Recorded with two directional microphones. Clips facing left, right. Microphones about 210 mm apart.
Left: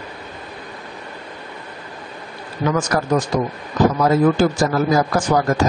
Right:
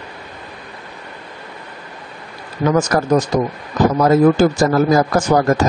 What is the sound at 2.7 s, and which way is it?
A man's voice, 40° right (ahead or behind).